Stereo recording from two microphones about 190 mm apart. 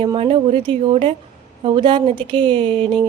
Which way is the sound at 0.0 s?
30° right (ahead or behind).